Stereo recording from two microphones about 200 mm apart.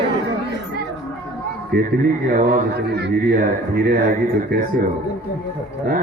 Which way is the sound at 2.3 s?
45° right (ahead or behind).